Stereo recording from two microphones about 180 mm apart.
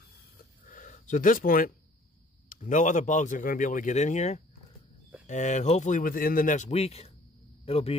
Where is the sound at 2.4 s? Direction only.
45° left (ahead or behind).